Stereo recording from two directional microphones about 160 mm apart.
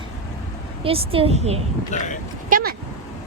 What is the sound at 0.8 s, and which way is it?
Speech, 35° right (ahead or behind).